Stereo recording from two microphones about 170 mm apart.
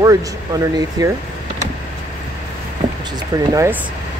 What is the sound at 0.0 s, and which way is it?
Speech, 20° right (ahead or behind).